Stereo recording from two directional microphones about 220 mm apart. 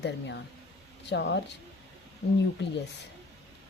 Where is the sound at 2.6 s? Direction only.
50° left (ahead or behind).